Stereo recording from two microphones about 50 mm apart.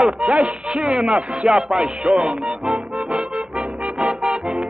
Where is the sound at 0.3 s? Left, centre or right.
Right.